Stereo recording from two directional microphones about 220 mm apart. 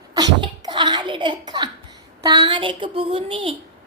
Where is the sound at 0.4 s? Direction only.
20° right (ahead or behind).